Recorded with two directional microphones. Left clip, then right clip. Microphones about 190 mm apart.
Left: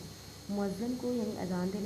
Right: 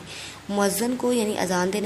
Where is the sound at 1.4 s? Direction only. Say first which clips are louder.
Right 14 dB; 40° right (ahead or behind).